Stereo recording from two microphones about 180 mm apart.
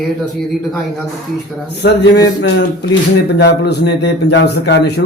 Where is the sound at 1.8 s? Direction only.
70° left (ahead or behind).